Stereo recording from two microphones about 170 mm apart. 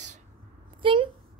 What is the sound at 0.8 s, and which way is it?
Speech, 30° right (ahead or behind).